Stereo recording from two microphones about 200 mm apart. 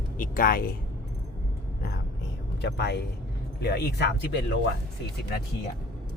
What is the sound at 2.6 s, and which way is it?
Speech, 55° left (ahead or behind).